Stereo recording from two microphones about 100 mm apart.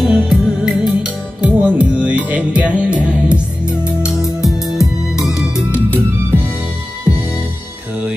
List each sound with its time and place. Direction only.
0.0 s music: 5° right (ahead or behind)
4.7 s music: 5° right (ahead or behind)
5.9 s music: 20° right (ahead or behind)